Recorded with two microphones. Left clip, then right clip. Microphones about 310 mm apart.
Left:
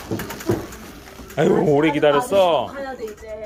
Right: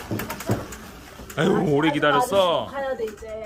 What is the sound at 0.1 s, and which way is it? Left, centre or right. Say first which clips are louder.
Bird: left 3 dB; left.